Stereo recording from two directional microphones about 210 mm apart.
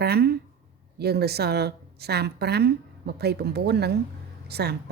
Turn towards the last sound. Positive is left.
turn(degrees=-50)  # may be behind; listen again after turning